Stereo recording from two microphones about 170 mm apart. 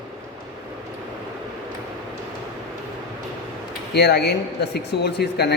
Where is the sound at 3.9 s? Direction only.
75° left (ahead or behind).